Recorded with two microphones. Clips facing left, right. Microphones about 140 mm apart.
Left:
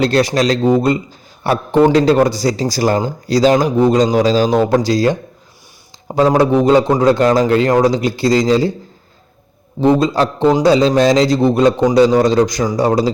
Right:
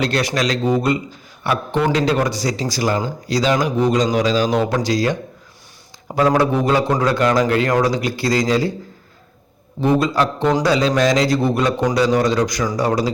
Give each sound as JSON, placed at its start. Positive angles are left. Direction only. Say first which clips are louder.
{"t": 0.0, "sound": "a man's voice", "louder": "left 6 dB", "side_deg": 30}
{"t": 9.8, "sound": "a man's voice", "louder": "left 4 dB", "side_deg": 25}